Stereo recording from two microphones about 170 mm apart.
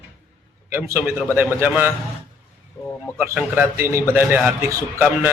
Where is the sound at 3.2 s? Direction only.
10° right (ahead or behind).